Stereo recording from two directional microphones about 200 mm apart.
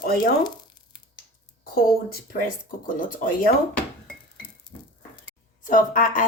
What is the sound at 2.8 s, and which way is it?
Speech, 40° left (ahead or behind).